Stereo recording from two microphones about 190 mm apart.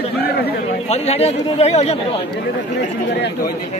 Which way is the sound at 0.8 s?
35° left (ahead or behind).